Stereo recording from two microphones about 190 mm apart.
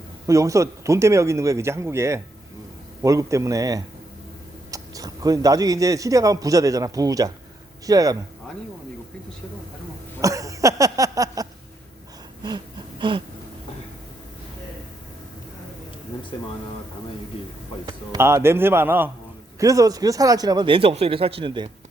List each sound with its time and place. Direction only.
0.3 s a man's voice: 15° right (ahead or behind)
10.2 s a sound: 15° right (ahead or behind)
17.8 s a man's voice: 15° right (ahead or behind)